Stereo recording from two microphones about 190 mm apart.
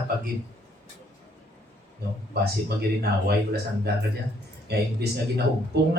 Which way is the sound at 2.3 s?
55° right (ahead or behind).